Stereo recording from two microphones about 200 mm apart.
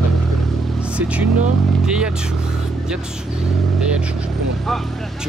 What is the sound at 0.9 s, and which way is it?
Speech, 5° right (ahead or behind).